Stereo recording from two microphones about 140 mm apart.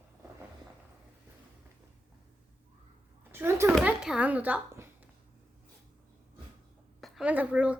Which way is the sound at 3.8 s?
5° right (ahead or behind).